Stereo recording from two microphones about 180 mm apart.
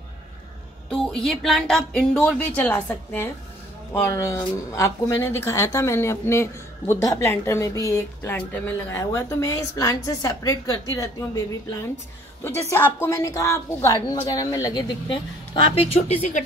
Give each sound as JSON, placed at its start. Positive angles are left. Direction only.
{"t": 0.8, "sound": "speech", "side_deg": 5}
{"t": 12.4, "sound": "a woman's voice", "side_deg": 15}